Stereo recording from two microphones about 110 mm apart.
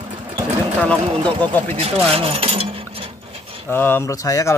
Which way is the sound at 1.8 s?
60° right (ahead or behind).